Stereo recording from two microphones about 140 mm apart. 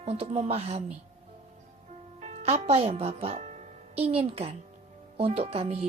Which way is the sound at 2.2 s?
50° right (ahead or behind).